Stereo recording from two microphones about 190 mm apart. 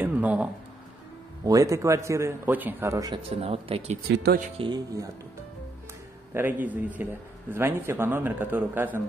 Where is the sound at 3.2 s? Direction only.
30° right (ahead or behind).